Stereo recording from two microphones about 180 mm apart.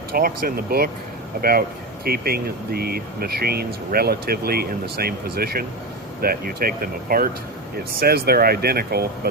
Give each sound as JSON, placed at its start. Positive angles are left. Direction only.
{"t": 0.1, "sound": "speech", "side_deg": -55}